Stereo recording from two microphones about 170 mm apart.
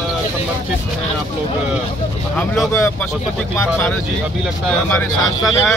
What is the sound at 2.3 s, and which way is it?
Speech, 5° left (ahead or behind).